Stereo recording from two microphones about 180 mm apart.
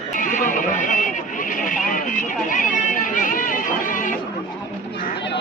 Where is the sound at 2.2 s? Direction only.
45° left (ahead or behind).